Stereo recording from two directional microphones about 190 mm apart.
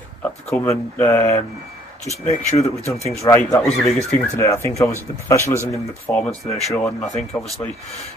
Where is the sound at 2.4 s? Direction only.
35° left (ahead or behind).